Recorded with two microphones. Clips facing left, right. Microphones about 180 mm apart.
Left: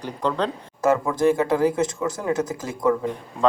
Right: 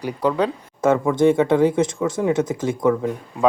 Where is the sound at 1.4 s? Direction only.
25° right (ahead or behind).